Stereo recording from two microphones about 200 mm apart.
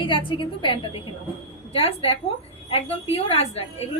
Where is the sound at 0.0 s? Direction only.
25° left (ahead or behind).